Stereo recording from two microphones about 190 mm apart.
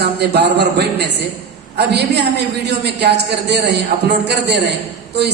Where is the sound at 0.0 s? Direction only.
60° right (ahead or behind).